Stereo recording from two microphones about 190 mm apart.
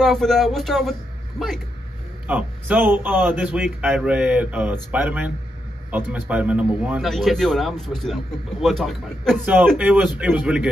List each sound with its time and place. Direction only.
0.0 s a man's voice: centre (ahead or behind)
2.2 s a man's voice: 10° right (ahead or behind)